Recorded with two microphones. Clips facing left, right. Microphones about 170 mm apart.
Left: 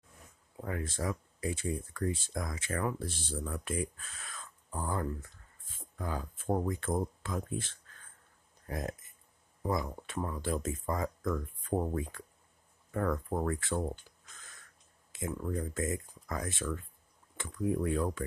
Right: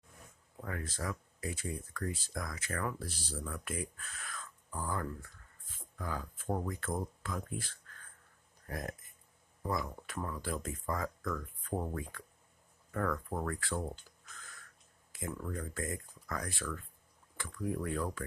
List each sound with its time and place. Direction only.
0.6 s speech: 25° left (ahead or behind)
15.1 s speech: 20° left (ahead or behind)